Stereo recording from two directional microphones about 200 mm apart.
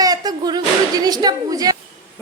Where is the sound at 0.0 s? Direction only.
20° right (ahead or behind).